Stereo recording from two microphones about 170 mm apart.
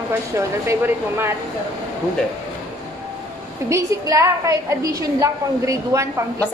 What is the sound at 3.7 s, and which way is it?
A woman's voice, 20° right (ahead or behind).